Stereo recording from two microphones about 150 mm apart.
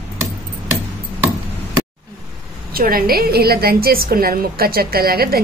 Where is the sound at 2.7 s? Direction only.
80° right.